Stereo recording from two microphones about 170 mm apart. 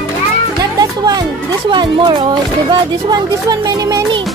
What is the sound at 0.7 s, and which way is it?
Music, 25° right (ahead or behind).